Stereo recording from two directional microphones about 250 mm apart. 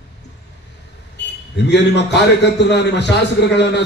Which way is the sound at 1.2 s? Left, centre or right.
Left.